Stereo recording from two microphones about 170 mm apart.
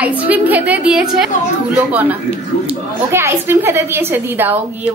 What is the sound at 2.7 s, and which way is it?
A woman's voice, 15° right (ahead or behind).